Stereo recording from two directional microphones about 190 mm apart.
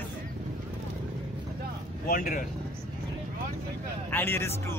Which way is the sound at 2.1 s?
45° left (ahead or behind).